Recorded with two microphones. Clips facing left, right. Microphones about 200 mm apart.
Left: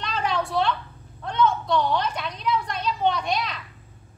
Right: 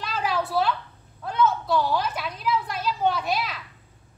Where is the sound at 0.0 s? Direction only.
5° right (ahead or behind).